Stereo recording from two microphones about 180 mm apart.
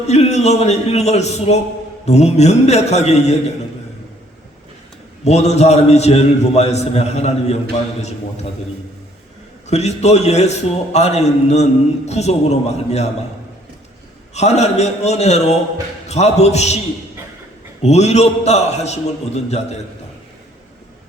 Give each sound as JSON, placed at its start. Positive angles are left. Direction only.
{"t": 0.1, "sound": "a man's voice", "side_deg": 40}
{"t": 5.2, "sound": "a man's voice", "side_deg": 35}
{"t": 9.6, "sound": "a man's voice", "side_deg": 40}
{"t": 14.3, "sound": "a man's voice", "side_deg": 40}
{"t": 17.8, "sound": "a man's voice", "side_deg": 35}